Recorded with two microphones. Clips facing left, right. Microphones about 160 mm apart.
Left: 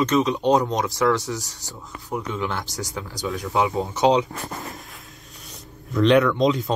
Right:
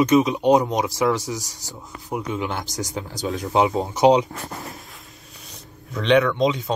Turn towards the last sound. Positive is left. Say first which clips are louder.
# left 1 dB
turn(degrees=0)  # may be behind; listen again after turning